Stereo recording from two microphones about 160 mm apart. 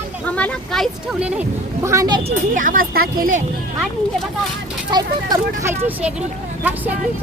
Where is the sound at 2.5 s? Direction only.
55° right (ahead or behind).